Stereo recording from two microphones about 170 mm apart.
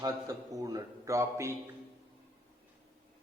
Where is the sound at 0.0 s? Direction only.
20° right (ahead or behind).